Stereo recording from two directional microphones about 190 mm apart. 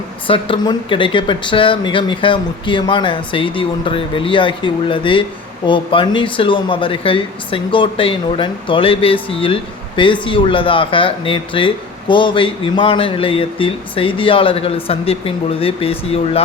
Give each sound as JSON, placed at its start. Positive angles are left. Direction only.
{"t": 0.3, "sound": "speech", "side_deg": 30}